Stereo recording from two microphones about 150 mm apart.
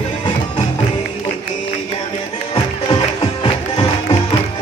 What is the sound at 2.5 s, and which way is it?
Music, 30° left (ahead or behind).